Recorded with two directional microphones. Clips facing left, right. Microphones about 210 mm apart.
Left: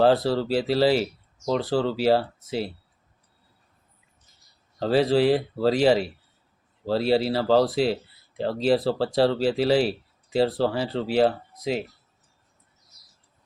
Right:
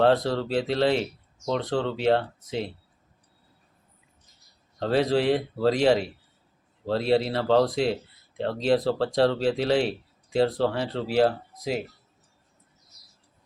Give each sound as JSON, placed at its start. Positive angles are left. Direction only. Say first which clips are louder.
{"t": 0.0, "sound": "speech", "louder": "left 2 dB", "side_deg": 5}
{"t": 4.8, "sound": "speech", "louder": "left 3 dB", "side_deg": 0}